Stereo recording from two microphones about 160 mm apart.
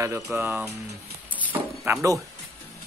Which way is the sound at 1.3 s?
10° right (ahead or behind).